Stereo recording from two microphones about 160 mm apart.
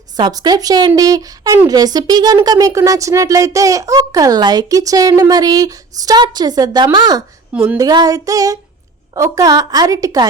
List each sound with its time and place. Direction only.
0.2 s speech: 25° right (ahead or behind)
7.5 s a sound: 10° right (ahead or behind)
7.8 s speech: 25° right (ahead or behind)